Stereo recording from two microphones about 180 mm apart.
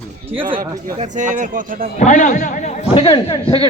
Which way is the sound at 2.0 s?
45° left (ahead or behind).